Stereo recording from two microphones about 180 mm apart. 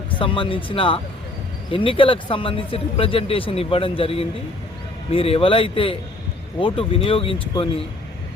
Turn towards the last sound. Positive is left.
turn(degrees=30)  # may be behind; listen again after turning